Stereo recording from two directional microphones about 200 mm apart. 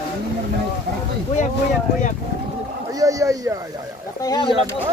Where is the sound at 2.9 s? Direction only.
15° right (ahead or behind).